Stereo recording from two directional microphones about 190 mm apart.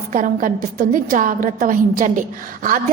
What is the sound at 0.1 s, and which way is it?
A woman's voice, 45° right (ahead or behind).